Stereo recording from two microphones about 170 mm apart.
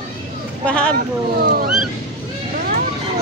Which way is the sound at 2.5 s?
55° right (ahead or behind).